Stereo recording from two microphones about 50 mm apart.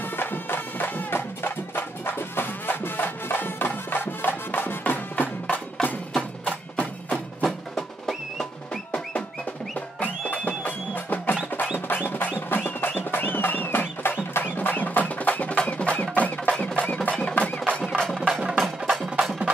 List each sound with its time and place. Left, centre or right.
0.2 s music: left
9.8 s music: left
14.3 s a sound: left
15.5 s music: left
18.9 s music: centre